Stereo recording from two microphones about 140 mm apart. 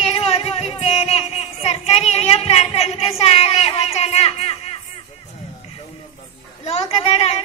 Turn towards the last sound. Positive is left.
turn(degrees=45)  # may be behind; listen again after turning